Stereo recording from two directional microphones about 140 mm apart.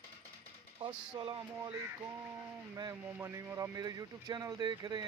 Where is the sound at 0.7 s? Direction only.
40° right (ahead or behind).